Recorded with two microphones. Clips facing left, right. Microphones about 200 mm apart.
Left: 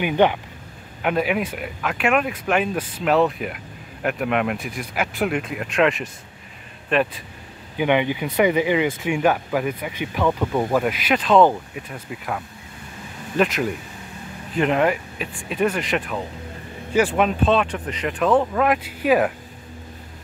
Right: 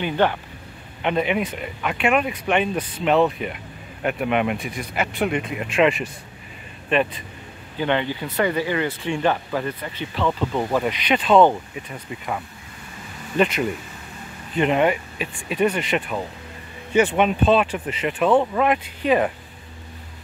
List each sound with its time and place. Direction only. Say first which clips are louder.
0.0 s speech: left 3 dB; 15° left (ahead or behind)
1.0 s speech: even; 5° left (ahead or behind)
7.7 s speech: left 3 dB; 15° left (ahead or behind)
13.4 s speech: even; centre (ahead or behind)